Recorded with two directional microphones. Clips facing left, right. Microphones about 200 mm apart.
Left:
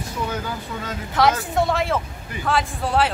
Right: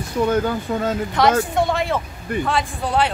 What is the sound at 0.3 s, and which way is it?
Speech, 50° right (ahead or behind).